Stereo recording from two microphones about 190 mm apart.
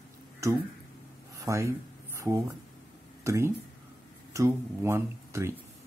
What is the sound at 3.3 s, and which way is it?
Speech, 15° right (ahead or behind).